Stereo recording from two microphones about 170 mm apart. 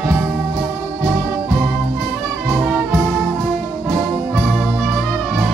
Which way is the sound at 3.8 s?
5° right (ahead or behind).